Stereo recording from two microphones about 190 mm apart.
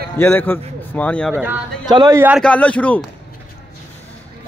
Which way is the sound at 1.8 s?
20° right (ahead or behind).